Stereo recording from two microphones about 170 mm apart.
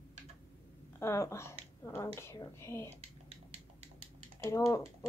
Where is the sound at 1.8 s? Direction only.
15° left (ahead or behind).